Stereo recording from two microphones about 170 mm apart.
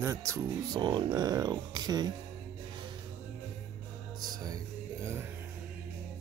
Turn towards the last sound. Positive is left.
turn(degrees=-15)  # may be behind; listen again after turning